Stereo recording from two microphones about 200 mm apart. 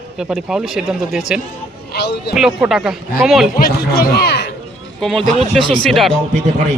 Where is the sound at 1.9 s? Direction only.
55° left (ahead or behind).